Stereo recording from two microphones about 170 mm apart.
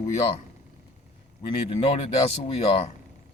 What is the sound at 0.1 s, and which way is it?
Speech, 40° left (ahead or behind).